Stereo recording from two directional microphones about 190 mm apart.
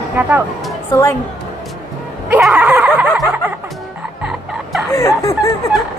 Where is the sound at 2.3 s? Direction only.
5° right (ahead or behind).